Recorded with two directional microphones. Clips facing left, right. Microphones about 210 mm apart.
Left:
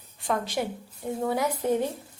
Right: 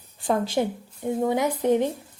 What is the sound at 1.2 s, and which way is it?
Speech, 20° right (ahead or behind).